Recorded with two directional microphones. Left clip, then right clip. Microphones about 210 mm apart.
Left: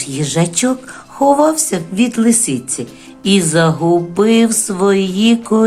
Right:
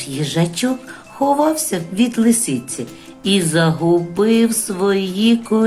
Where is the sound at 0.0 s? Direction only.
20° left (ahead or behind).